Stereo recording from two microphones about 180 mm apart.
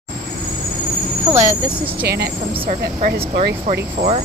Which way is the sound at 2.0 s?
60° right (ahead or behind).